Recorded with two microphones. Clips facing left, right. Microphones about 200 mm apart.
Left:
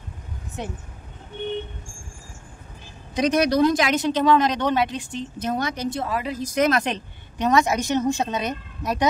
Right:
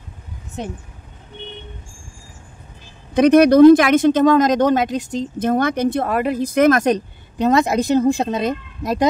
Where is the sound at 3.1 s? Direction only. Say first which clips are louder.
Right 9 dB; 55° right (ahead or behind).